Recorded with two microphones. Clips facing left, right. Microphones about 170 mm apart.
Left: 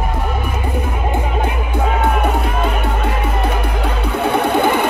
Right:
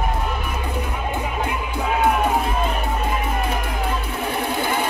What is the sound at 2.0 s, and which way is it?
Music, 70° left (ahead or behind).